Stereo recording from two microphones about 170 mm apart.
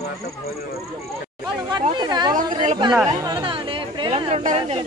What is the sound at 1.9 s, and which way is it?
Speech, 25° right (ahead or behind).